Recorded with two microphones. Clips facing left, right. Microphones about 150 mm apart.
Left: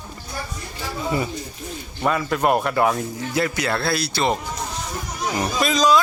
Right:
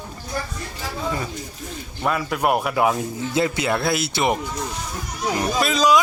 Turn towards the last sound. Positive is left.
turn(degrees=-10)  # may be behind; listen again after turning